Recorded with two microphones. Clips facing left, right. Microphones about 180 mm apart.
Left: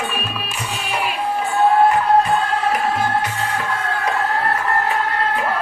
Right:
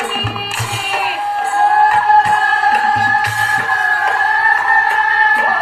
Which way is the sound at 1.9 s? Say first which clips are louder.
Right 3 dB; 90° right.